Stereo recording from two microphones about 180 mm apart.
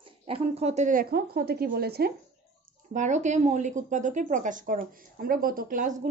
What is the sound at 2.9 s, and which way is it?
A woman's voice, 40° right (ahead or behind).